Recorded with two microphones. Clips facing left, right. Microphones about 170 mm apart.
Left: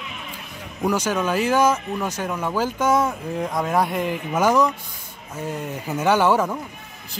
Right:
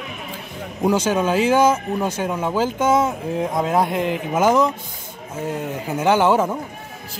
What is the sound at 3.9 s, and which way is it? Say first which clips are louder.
Speech: right 3 dB; 90° right.